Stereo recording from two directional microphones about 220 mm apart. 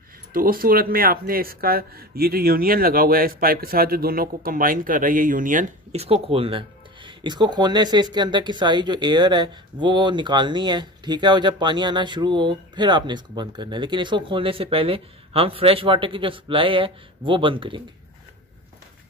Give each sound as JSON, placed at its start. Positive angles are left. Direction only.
{"t": 0.3, "sound": "speech", "side_deg": -40}